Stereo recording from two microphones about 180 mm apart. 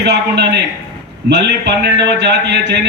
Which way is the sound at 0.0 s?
65° right (ahead or behind).